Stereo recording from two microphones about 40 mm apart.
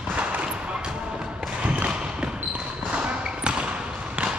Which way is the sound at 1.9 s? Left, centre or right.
Right.